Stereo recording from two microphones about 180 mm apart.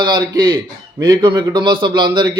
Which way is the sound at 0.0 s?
25° right (ahead or behind).